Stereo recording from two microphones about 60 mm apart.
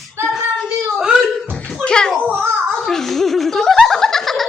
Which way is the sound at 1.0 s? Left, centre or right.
Centre.